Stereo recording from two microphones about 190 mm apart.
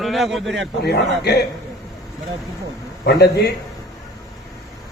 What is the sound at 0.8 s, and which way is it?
Speech, 60° left (ahead or behind).